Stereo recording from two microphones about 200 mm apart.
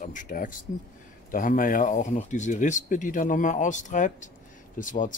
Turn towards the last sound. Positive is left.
turn(degrees=40)  # may be behind; listen again after turning